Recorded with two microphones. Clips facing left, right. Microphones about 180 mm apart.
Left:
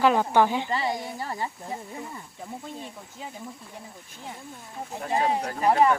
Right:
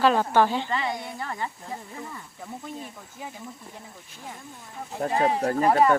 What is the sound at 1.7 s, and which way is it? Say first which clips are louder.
Speech: left 1 dB; 20° left (ahead or behind).